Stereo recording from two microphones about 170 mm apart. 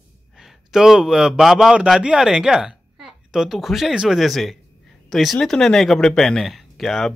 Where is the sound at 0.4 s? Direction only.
Centre (ahead or behind).